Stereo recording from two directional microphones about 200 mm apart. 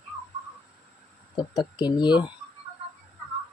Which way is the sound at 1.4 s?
20° left (ahead or behind).